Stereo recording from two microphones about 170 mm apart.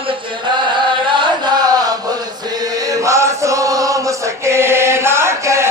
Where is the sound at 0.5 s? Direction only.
25° right (ahead or behind).